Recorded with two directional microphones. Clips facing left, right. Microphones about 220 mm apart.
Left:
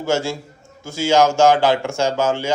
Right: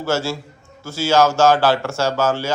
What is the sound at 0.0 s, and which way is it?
Speech, 15° left (ahead or behind).